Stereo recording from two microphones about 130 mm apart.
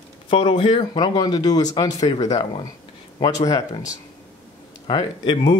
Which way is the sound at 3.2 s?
30° left (ahead or behind).